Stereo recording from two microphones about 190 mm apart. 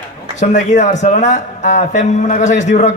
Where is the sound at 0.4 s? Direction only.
40° left (ahead or behind).